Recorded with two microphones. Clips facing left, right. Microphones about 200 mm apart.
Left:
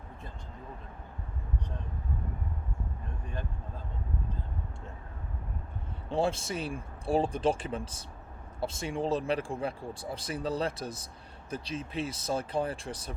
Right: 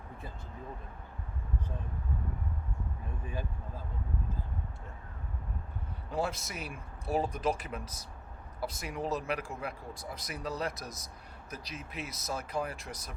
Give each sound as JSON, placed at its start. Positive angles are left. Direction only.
{"t": 6.1, "sound": "speech", "side_deg": 30}